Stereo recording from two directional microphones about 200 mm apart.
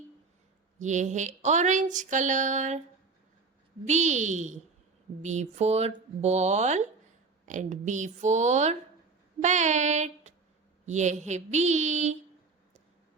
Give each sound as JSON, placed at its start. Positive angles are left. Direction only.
{"t": 0.8, "sound": "speech", "side_deg": -35}
{"t": 3.8, "sound": "speech", "side_deg": -35}